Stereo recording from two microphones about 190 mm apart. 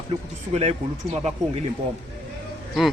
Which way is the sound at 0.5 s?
35° right (ahead or behind).